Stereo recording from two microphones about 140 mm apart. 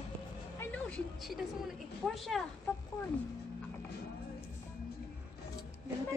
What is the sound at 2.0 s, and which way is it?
Speech, centre (ahead or behind).